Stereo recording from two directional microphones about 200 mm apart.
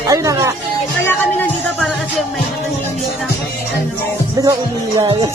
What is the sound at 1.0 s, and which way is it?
Music, 10° left (ahead or behind).